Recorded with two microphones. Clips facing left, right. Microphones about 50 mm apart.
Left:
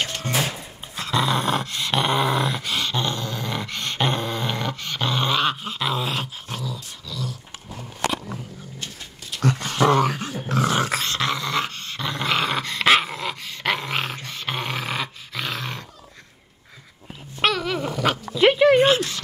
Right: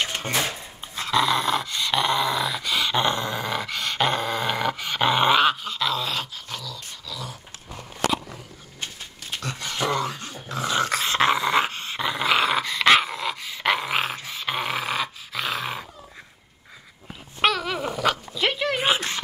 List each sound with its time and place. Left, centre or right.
0.4 s dog: centre
2.9 s dog: centre
3.4 s dog: centre
5.6 s dog: centre
6.5 s dog: left
7.1 s dog: centre
9.4 s dog: left
10.5 s dog: left
11.1 s dog: centre
17.4 s babbling: centre
18.0 s dog: centre
18.4 s a sound: centre
18.9 s dog: right